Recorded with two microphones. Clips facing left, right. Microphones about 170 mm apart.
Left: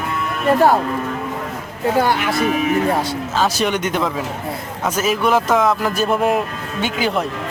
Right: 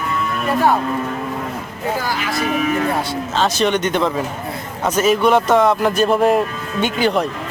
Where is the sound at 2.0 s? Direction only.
60° left (ahead or behind).